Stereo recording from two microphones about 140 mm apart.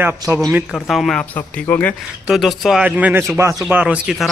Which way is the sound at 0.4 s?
5° right (ahead or behind).